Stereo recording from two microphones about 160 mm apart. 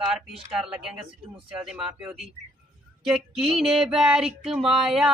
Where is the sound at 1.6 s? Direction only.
5° right (ahead or behind).